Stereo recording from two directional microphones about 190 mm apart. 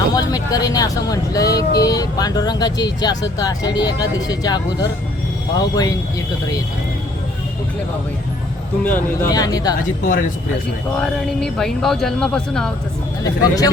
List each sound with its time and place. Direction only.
0.1 s speech: 20° left (ahead or behind)
8.8 s speech: 10° left (ahead or behind)
10.1 s speech: 45° left (ahead or behind)
10.9 s speech: 5° left (ahead or behind)
13.2 s speech: 20° left (ahead or behind)